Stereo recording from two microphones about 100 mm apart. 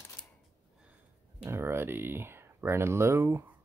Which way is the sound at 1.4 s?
25° right (ahead or behind).